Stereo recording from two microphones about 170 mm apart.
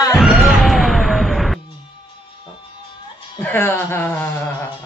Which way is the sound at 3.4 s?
10° left (ahead or behind).